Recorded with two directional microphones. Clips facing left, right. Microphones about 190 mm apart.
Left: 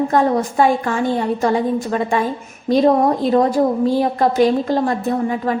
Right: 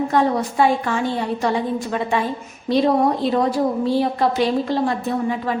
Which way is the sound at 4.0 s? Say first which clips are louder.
Left 4 dB; 45° left (ahead or behind).